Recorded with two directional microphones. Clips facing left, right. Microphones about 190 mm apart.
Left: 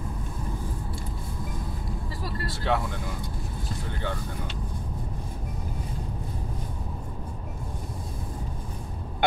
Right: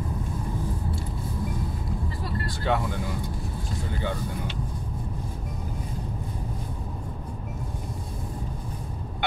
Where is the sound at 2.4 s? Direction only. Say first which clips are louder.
Even; centre (ahead or behind).